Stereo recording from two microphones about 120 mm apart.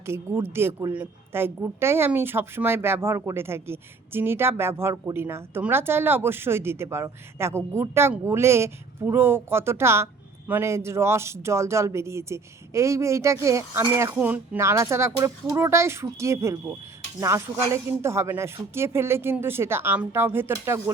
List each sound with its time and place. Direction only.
0.0 s a woman's voice: 20° right (ahead or behind)